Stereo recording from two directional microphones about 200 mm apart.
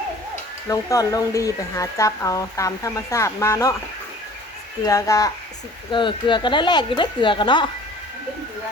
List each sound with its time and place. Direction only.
0.7 s speech: 15° left (ahead or behind)
4.9 s speech: 15° left (ahead or behind)